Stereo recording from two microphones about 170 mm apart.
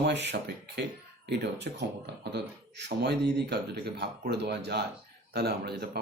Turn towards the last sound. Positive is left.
turn(degrees=-70)  # may be behind; listen again after turning